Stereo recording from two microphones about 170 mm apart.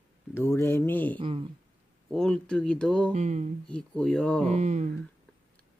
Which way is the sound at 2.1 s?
5° left (ahead or behind).